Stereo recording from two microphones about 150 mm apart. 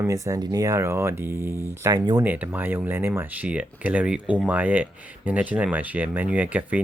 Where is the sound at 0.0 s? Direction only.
20° right (ahead or behind).